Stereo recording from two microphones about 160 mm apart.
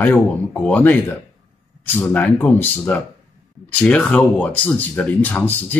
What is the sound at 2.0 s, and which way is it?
Speech, 10° left (ahead or behind).